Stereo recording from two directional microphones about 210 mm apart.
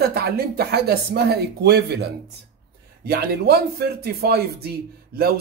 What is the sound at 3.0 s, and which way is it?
Speech, 45° right (ahead or behind).